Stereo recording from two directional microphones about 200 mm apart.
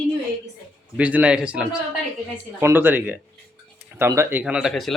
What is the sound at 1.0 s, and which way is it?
Speech, 5° right (ahead or behind).